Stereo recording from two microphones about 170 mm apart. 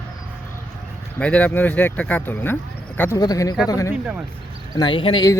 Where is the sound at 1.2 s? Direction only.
5° left (ahead or behind).